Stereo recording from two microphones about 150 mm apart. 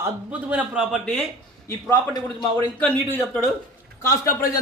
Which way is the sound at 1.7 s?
20° left (ahead or behind).